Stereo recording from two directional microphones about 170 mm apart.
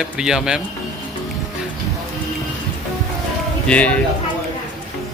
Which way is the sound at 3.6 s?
5° left (ahead or behind).